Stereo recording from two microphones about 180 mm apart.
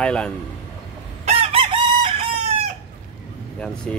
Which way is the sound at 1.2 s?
35° right (ahead or behind).